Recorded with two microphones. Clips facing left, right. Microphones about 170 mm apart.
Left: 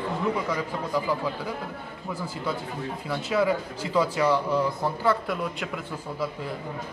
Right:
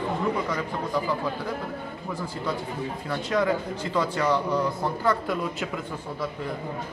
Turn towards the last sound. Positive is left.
turn(degrees=5)  # may be behind; listen again after turning